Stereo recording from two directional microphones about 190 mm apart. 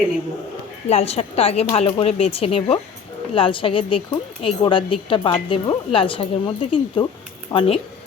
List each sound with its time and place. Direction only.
0.9 s a woman's voice: 35° left (ahead or behind)